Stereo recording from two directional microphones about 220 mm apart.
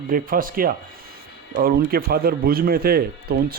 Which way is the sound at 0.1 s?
40° right (ahead or behind).